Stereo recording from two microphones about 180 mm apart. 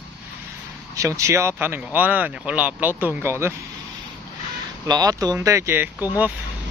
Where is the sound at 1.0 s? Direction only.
15° right (ahead or behind).